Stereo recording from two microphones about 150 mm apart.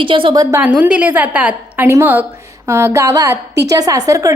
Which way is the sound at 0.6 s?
10° right (ahead or behind).